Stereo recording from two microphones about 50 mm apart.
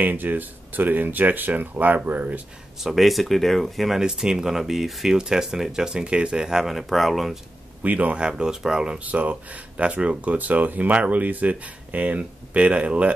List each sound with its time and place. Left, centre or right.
0.0 s speech: right
2.8 s speech: centre
4.0 s speech: centre
7.8 s speech: right; by 9.0 s centre
9.0 s speech: right